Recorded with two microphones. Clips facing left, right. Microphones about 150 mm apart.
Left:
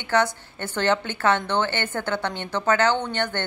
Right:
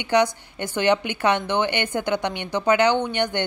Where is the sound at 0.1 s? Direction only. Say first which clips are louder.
Right 2 dB; 15° right (ahead or behind).